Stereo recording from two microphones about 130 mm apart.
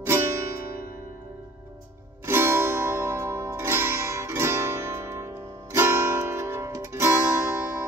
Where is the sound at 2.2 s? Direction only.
20° right (ahead or behind).